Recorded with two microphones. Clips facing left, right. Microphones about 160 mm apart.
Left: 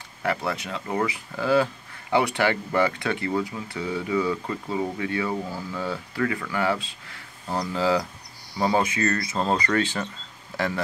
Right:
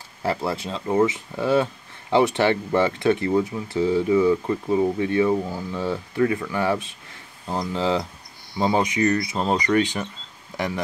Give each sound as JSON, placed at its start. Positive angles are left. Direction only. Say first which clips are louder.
{"t": 0.2, "sound": "speech", "louder": "right 2 dB", "side_deg": -30}